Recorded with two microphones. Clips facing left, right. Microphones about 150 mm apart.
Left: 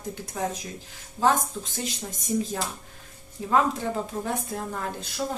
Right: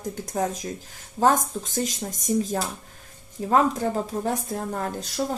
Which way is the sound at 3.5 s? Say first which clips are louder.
Right 3 dB; 40° right (ahead or behind).